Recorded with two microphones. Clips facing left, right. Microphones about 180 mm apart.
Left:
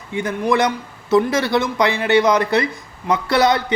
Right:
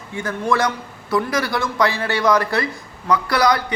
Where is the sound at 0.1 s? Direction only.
20° left (ahead or behind).